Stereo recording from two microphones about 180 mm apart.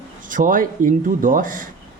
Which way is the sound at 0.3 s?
50° right (ahead or behind).